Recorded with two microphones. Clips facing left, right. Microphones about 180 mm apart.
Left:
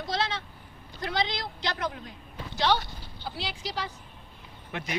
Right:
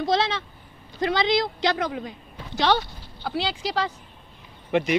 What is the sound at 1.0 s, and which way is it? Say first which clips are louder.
A woman's voice: right 9 dB; 90° right.